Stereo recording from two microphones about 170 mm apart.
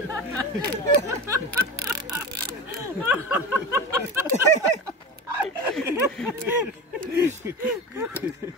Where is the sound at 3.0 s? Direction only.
10° right (ahead or behind).